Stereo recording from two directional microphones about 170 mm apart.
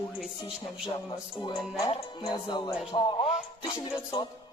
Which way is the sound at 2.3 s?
25° left (ahead or behind).